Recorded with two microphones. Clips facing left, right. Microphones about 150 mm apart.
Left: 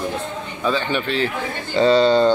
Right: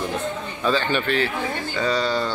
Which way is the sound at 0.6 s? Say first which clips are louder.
Left 1 dB; 15° left (ahead or behind).